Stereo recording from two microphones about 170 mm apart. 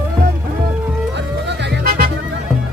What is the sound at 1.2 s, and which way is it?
Music, 90° right.